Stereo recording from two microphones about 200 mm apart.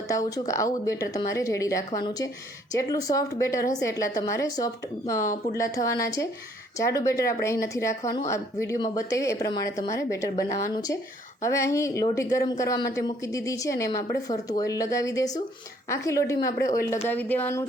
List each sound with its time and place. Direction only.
0.1 s a woman's voice: 15° left (ahead or behind)